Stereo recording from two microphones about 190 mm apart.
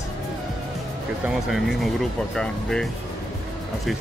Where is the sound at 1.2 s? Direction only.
Centre (ahead or behind).